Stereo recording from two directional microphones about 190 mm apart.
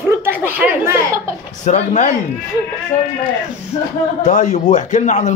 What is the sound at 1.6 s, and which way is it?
Speech, 40° left (ahead or behind).